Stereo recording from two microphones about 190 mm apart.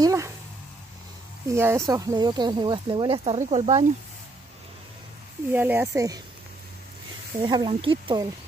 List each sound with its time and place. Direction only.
0.0 s a sound: 15° right (ahead or behind)
1.5 s speech: 15° right (ahead or behind); by 3.8 s 35° right (ahead or behind)
5.5 s speech: 10° right (ahead or behind)
7.4 s speech: 25° right (ahead or behind)